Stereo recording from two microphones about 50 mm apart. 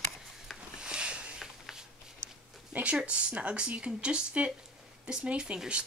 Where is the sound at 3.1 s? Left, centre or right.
Right.